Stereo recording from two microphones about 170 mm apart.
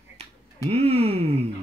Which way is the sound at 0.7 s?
35° right (ahead or behind).